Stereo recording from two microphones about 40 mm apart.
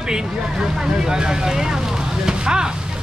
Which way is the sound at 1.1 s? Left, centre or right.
Centre.